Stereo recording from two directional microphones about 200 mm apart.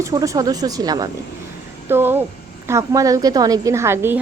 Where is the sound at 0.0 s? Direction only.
15° right (ahead or behind).